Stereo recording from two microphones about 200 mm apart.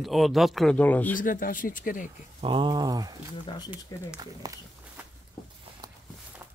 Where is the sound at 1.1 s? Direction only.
45° left (ahead or behind).